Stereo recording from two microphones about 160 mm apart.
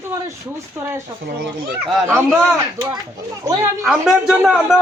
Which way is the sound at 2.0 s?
15° right (ahead or behind).